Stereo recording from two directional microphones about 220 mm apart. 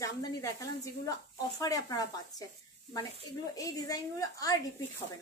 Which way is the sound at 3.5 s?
15° left (ahead or behind).